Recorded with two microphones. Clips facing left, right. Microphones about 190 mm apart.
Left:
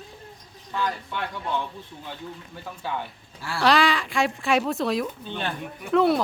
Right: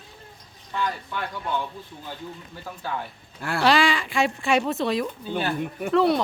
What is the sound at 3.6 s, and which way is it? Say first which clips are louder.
Speech: even; centre (ahead or behind).